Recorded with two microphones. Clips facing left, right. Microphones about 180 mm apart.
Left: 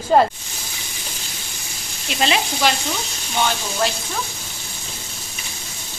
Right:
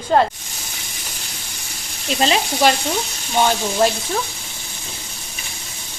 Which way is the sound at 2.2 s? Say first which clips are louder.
Right 2 dB; 35° right (ahead or behind).